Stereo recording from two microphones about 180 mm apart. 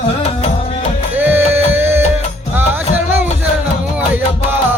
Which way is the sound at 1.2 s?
10° right (ahead or behind).